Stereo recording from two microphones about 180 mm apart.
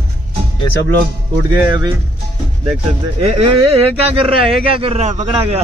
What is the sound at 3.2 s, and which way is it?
Speech, 35° right (ahead or behind).